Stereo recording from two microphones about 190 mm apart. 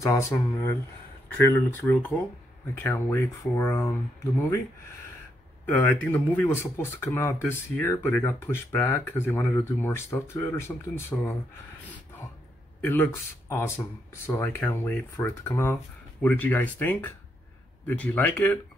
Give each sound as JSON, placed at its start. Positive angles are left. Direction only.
{"t": 0.0, "sound": "speech", "side_deg": 15}
{"t": 5.7, "sound": "speech", "side_deg": 10}
{"t": 12.8, "sound": "speech", "side_deg": 10}